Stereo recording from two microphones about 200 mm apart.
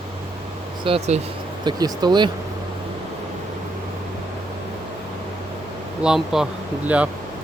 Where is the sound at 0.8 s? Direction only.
30° right (ahead or behind).